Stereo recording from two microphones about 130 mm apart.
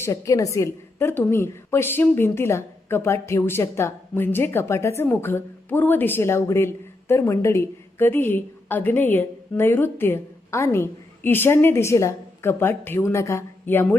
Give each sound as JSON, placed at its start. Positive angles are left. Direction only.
{"t": 0.0, "sound": "a woman's voice", "side_deg": 25}